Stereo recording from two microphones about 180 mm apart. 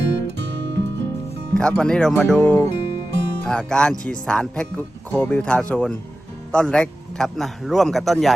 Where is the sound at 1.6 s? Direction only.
5° left (ahead or behind).